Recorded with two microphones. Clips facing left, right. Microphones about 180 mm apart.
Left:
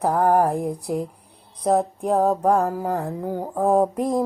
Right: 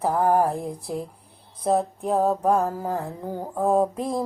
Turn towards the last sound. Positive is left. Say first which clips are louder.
# left 3 dB
turn(degrees=15)  # may be behind; listen again after turning